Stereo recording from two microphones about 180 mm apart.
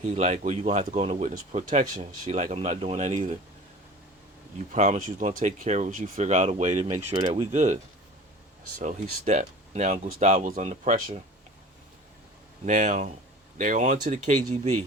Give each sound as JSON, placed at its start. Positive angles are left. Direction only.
{"t": 0.2, "sound": "speech", "side_deg": -40}
{"t": 4.5, "sound": "speech", "side_deg": -40}
{"t": 8.8, "sound": "speech", "side_deg": -40}
{"t": 12.6, "sound": "speech", "side_deg": -45}